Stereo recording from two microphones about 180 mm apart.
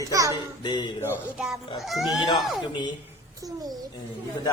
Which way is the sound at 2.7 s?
25° left (ahead or behind).